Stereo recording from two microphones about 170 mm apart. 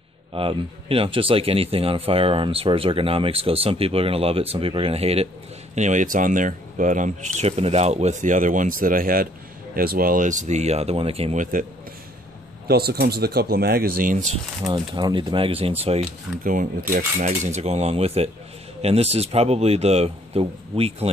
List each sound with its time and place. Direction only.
0.3 s speech: 30° right (ahead or behind)
12.6 s speech: 70° right (ahead or behind)
14.7 s speech: 25° right (ahead or behind)
16.3 s speech: centre (ahead or behind)
17.2 s speech: 45° right (ahead or behind)